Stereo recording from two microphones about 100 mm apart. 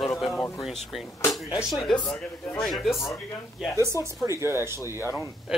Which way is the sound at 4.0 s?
30° right (ahead or behind).